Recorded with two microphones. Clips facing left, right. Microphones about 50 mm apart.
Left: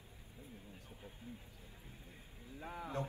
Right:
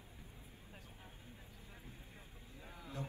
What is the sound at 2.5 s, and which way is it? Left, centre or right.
Speech, left.